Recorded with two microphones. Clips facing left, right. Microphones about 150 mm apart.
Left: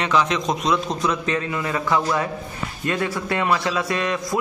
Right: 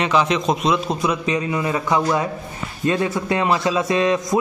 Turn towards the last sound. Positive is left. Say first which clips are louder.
# right 5 dB
turn(degrees=-20)  # may be behind; listen again after turning